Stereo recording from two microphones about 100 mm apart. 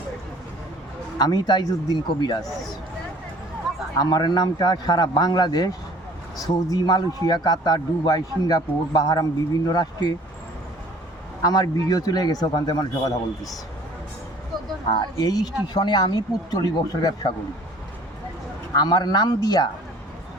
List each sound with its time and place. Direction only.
1.2 s a man's voice: 45° left (ahead or behind)
4.0 s a man's voice: 45° left (ahead or behind)
11.4 s a man's voice: 40° left (ahead or behind)
14.8 s a man's voice: 40° left (ahead or behind)
18.7 s a man's voice: 40° left (ahead or behind)